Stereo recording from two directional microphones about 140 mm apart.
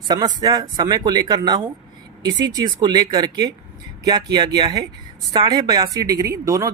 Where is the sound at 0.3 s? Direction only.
30° right (ahead or behind).